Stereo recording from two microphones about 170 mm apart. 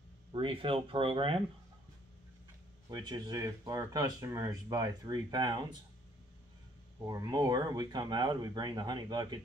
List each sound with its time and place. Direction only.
0.3 s speech: 30° right (ahead or behind)
2.9 s speech: 25° right (ahead or behind)
7.1 s speech: 20° right (ahead or behind)